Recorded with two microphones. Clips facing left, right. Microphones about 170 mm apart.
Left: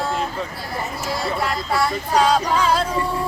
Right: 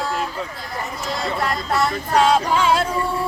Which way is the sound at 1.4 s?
Centre (ahead or behind).